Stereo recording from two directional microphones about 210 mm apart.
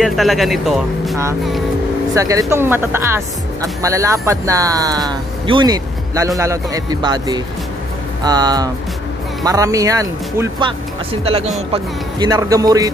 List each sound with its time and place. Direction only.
0.0 s speech: centre (ahead or behind)
2.1 s speech: 15° right (ahead or behind)
11.2 s speech: 30° right (ahead or behind)